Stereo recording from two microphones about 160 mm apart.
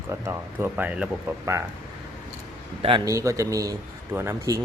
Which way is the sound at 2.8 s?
30° right (ahead or behind).